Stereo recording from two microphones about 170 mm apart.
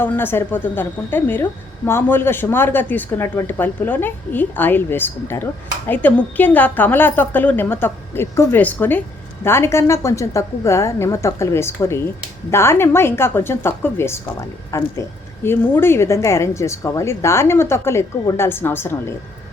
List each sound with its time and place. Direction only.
0.0 s speech: 10° left (ahead or behind)